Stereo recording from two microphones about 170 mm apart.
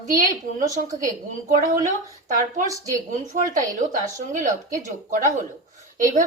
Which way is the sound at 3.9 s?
50° right (ahead or behind).